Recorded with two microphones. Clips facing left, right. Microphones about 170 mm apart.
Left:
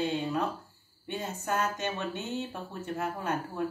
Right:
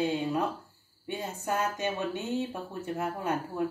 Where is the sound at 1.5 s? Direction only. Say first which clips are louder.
Right 1 dB; 10° right (ahead or behind).